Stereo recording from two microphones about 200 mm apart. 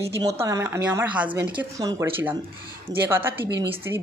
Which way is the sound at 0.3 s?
15° right (ahead or behind).